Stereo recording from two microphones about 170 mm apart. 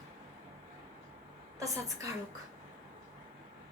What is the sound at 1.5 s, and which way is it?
Speech, 20° right (ahead or behind).